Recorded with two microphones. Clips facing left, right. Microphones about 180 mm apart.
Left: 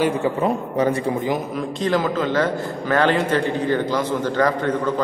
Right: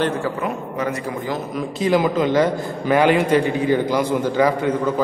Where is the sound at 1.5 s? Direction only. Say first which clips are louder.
Right 1 dB; centre (ahead or behind).